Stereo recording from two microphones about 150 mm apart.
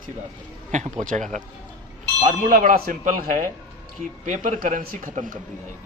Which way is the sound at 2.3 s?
65° right (ahead or behind).